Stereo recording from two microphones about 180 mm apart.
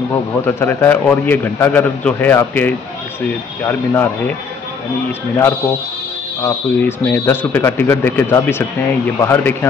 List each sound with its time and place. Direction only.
0.6 s speech: 10° left (ahead or behind)
6.4 s speech: 10° left (ahead or behind)